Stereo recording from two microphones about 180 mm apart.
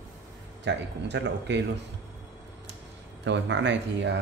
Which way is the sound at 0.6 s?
75° right (ahead or behind).